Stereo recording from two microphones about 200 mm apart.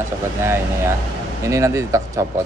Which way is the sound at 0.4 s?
10° right (ahead or behind).